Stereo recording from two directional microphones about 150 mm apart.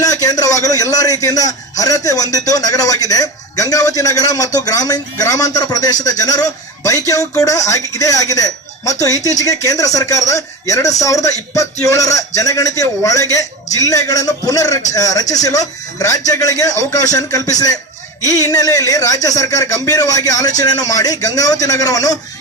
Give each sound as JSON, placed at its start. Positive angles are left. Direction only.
{"t": 0.0, "sound": "a man's voice", "side_deg": 25}